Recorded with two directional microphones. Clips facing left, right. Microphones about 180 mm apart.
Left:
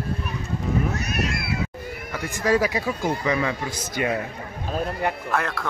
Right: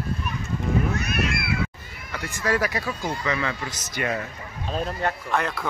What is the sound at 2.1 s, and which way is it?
Speech, 15° left (ahead or behind).